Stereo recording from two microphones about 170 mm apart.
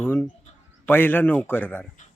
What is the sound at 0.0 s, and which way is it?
A man's voice, 10° left (ahead or behind).